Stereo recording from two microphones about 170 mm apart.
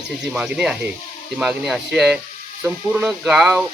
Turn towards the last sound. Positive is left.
turn(degrees=-5)  # may be behind; listen again after turning